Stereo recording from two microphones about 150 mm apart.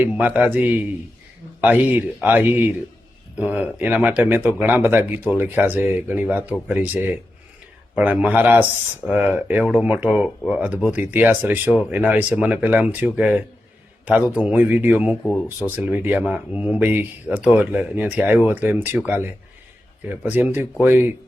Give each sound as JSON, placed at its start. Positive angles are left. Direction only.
{"t": 0.0, "sound": "a man's voice", "side_deg": -10}
{"t": 15.2, "sound": "speech", "side_deg": 5}
{"t": 15.4, "sound": "speech", "side_deg": -10}
{"t": 20.3, "sound": "speech", "side_deg": -10}